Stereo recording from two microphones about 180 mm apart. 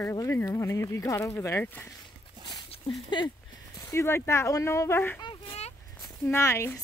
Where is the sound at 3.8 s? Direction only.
15° left (ahead or behind).